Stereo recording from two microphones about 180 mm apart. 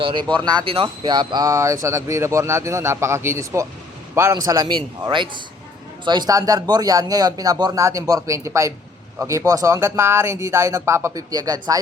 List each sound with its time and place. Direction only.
0.0 s speech: 25° right (ahead or behind)